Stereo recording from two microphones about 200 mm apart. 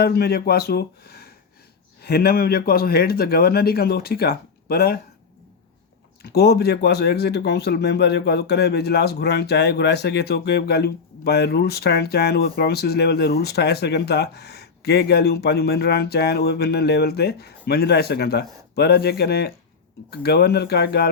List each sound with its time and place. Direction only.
0.0 s speech: 50° left (ahead or behind)
6.2 s speech: 50° left (ahead or behind)